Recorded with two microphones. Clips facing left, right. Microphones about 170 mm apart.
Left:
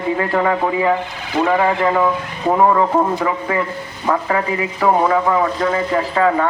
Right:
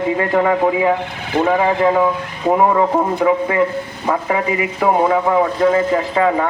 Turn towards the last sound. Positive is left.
turn(degrees=-10)  # may be behind; listen again after turning